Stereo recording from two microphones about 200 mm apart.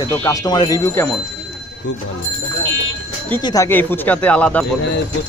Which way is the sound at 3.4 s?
20° left (ahead or behind).